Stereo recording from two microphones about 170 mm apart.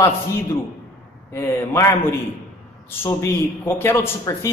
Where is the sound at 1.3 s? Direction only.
15° left (ahead or behind).